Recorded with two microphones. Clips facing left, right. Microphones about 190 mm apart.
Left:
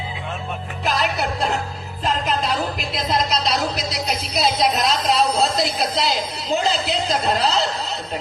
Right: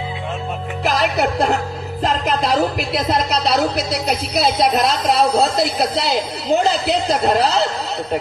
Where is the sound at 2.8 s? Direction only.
65° right (ahead or behind).